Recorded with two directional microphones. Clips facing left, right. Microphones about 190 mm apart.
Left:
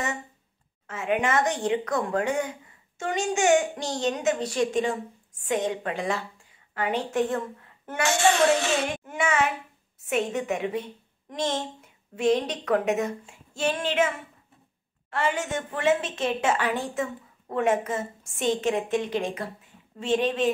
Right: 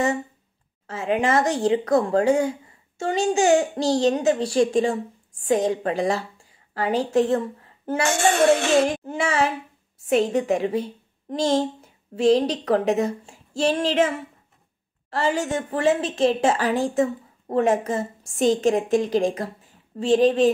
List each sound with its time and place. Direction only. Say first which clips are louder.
0.8 s a woman's voice: right 3 dB; 35° right (ahead or behind)
8.3 s a woman's voice: right 4 dB; 50° right (ahead or behind)